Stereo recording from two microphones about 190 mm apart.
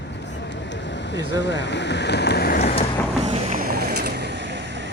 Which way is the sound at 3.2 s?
35° right (ahead or behind).